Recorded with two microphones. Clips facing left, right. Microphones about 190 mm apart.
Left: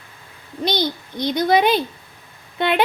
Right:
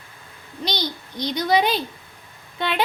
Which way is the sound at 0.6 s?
50° left (ahead or behind).